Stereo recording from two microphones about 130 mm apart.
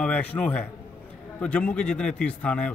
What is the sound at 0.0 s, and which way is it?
A man's voice, 10° left (ahead or behind).